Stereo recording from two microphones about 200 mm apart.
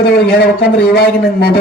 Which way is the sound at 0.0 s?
50° left (ahead or behind).